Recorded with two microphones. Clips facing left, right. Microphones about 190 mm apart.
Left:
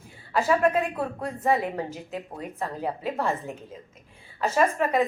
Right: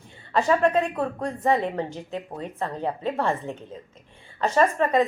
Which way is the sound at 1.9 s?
30° right (ahead or behind).